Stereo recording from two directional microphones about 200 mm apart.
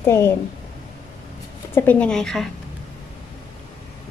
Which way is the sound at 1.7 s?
10° left (ahead or behind).